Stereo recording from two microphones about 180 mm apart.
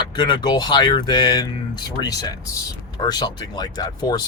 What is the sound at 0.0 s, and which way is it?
Speech, 25° left (ahead or behind).